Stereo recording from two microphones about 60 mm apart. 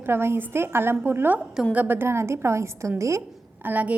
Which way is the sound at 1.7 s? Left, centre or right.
Right.